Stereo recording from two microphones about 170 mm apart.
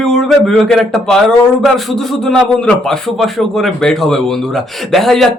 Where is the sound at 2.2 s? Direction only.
5° left (ahead or behind).